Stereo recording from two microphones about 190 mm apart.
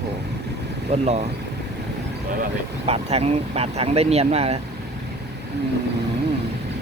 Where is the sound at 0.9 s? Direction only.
35° right (ahead or behind).